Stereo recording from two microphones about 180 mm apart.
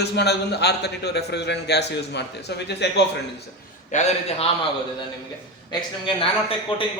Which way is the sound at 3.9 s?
40° left (ahead or behind).